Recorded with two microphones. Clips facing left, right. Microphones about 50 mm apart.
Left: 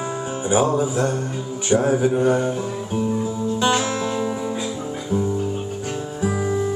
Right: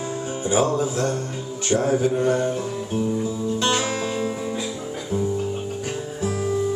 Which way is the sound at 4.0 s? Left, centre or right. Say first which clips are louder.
Left 2 dB; centre.